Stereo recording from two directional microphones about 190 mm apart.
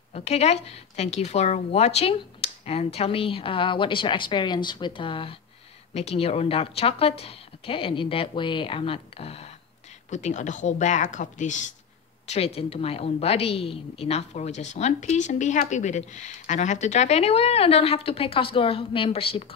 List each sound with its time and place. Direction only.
0.1 s a woman's voice: 35° left (ahead or behind)